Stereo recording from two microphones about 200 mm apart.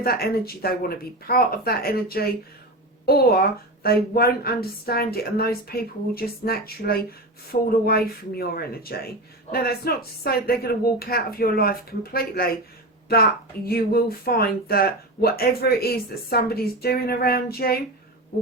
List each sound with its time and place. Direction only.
0.0 s speech: 50° left (ahead or behind)
13.7 s speech: 50° left (ahead or behind)